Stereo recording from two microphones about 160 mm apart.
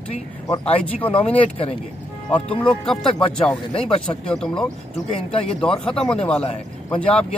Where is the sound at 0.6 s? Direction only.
35° left (ahead or behind).